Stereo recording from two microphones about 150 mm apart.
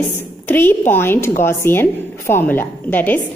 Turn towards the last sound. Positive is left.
turn(degrees=10)  # may be behind; listen again after turning